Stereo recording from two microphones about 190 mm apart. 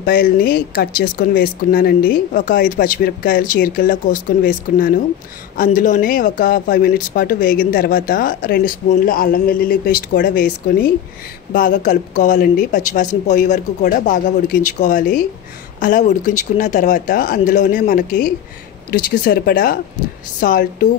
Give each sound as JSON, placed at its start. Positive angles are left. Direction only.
{"t": 0.0, "sound": "speech", "side_deg": 50}